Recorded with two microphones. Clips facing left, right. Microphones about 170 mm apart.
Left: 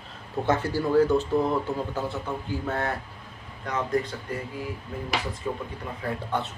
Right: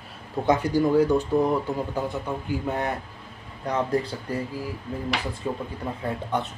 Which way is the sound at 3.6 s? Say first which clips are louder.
Right 2 dB; 35° right (ahead or behind).